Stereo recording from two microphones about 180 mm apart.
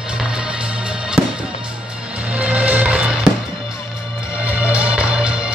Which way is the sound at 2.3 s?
5° right (ahead or behind).